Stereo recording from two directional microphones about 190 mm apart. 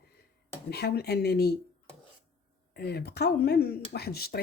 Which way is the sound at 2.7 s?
55° left (ahead or behind).